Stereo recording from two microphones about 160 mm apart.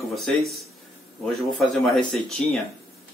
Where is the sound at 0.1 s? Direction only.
Centre (ahead or behind).